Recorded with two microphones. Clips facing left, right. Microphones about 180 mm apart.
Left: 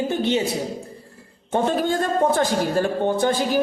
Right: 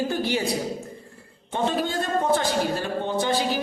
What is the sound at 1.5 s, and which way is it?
A man's voice, 50° left (ahead or behind).